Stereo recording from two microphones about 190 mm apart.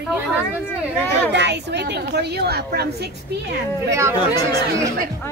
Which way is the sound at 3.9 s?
15° right (ahead or behind).